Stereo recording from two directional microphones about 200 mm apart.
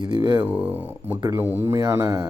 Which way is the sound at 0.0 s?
20° right (ahead or behind).